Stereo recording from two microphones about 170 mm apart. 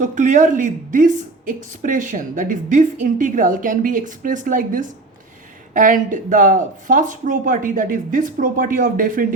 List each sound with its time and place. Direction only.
0.0 s a woman's voice: 50° right (ahead or behind)